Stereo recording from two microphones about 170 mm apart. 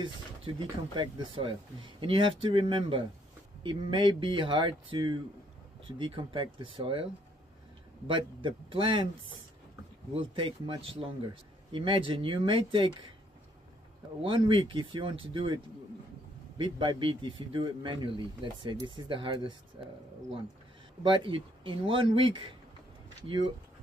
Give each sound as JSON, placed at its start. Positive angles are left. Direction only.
{"t": 0.0, "sound": "speech", "side_deg": -30}
{"t": 8.1, "sound": "speech", "side_deg": -30}
{"t": 10.1, "sound": "speech", "side_deg": -30}
{"t": 14.2, "sound": "speech", "side_deg": -30}
{"t": 21.0, "sound": "speech", "side_deg": -30}